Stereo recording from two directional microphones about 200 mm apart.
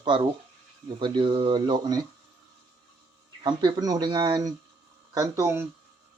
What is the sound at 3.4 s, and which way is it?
Speech, 20° right (ahead or behind).